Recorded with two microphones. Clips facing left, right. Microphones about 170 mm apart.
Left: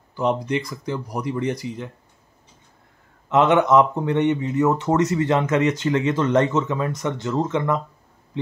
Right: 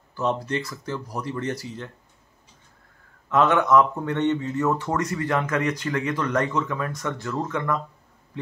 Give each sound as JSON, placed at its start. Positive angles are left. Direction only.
{"t": 0.1, "sound": "speech", "side_deg": 15}
{"t": 3.3, "sound": "speech", "side_deg": 20}